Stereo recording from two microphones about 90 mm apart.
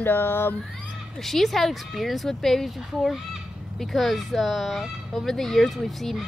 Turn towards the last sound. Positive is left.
turn(degrees=0)  # may be behind; listen again after turning